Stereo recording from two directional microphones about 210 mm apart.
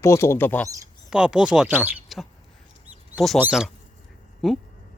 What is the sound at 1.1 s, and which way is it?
Speech, 5° right (ahead or behind).